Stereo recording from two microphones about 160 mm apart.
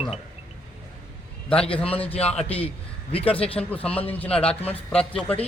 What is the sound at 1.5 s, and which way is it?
Speech, 10° left (ahead or behind).